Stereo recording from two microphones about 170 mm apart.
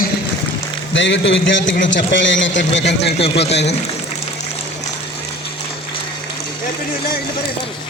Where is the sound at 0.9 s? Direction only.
90° left.